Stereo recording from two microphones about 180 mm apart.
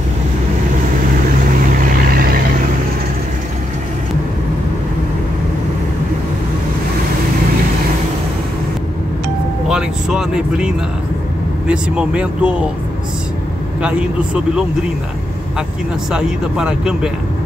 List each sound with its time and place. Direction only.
1.8 s vehicle: 55° right (ahead or behind)
9.7 s vehicle: 5° right (ahead or behind)
11.6 s speech: 5° right (ahead or behind)
13.7 s speech: 5° right (ahead or behind)
16.1 s speech: 5° right (ahead or behind)